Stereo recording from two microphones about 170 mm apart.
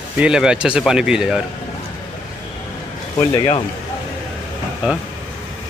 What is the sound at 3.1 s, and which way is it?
Speech, 25° left (ahead or behind).